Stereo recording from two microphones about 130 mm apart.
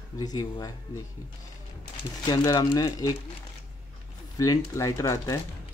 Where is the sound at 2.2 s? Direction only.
30° left (ahead or behind).